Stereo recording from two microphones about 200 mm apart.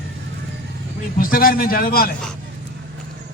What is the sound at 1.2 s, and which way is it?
Speech, 45° left (ahead or behind).